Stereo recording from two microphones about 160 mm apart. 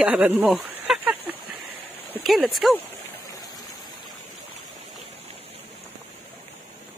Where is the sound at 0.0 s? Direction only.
5° right (ahead or behind).